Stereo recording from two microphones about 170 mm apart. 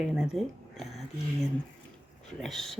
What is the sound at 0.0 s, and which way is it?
Speech, centre (ahead or behind).